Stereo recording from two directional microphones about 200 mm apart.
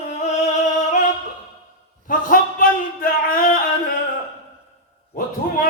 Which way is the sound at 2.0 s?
45° left (ahead or behind).